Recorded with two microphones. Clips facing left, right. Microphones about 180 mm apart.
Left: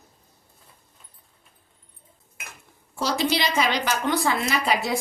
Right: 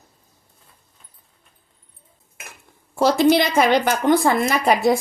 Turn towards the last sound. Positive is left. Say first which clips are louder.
# right 7 dB
turn(degrees=-50)  # may be behind; listen again after turning